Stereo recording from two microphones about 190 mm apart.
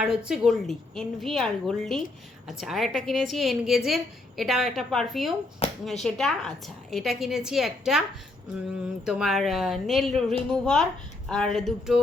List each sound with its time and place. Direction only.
0.0 s a woman's voice: 5° right (ahead or behind)
5.6 s speech: 35° left (ahead or behind)
6.0 s a woman's voice: centre (ahead or behind)
9.0 s a woman's voice: centre (ahead or behind)